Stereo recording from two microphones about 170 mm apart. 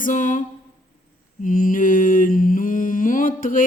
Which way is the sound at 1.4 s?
50° left (ahead or behind).